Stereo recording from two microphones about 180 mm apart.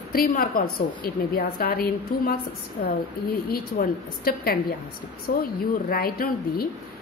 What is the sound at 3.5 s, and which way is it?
Speech, 55° left (ahead or behind).